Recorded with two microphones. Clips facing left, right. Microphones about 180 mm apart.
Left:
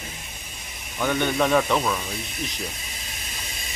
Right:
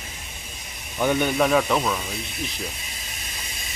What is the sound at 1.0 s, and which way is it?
A man's voice, 10° right (ahead or behind).